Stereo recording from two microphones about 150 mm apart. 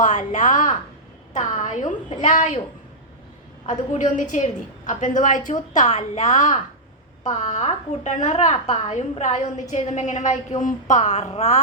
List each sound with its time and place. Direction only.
0.0 s a woman's voice: 55° left (ahead or behind)
3.7 s a woman's voice: 55° left (ahead or behind)